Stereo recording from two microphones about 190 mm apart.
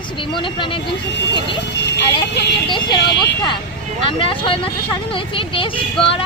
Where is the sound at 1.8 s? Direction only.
65° left (ahead or behind).